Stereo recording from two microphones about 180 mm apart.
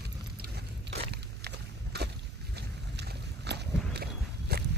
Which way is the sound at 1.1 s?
65° right (ahead or behind).